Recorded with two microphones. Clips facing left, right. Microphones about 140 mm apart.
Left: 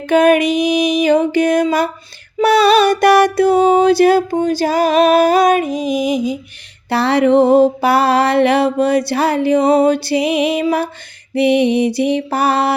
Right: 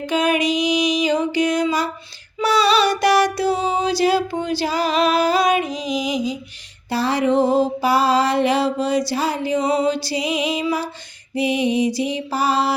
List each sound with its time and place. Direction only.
0.0 s music: 55° left (ahead or behind)
2.4 s a sound: 55° left (ahead or behind)
6.9 s music: 65° left (ahead or behind)